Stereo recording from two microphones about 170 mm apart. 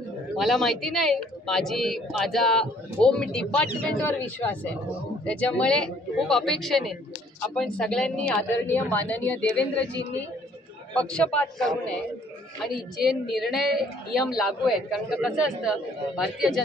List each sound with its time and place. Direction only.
0.4 s a woman's voice: centre (ahead or behind)
10.9 s a woman's voice: 5° left (ahead or behind)
13.4 s speech: centre (ahead or behind)